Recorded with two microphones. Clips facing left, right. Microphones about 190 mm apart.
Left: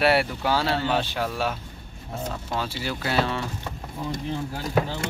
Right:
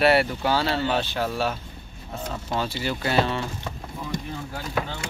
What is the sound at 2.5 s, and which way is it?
Speech, 5° left (ahead or behind).